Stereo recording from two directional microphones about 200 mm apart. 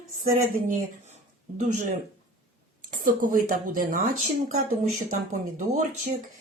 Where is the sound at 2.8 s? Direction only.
45° right (ahead or behind).